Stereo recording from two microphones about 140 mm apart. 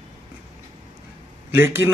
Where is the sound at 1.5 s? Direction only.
15° right (ahead or behind).